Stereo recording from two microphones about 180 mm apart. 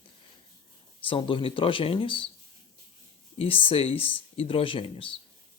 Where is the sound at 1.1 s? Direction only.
30° left (ahead or behind).